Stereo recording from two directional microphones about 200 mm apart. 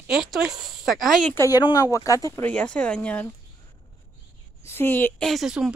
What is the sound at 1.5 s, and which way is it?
Speech, 20° left (ahead or behind).